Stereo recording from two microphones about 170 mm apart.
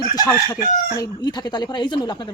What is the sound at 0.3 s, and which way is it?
Speech, 20° left (ahead or behind).